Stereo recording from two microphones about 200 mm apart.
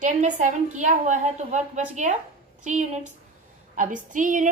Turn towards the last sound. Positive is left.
turn(degrees=-40)  # may be behind; listen again after turning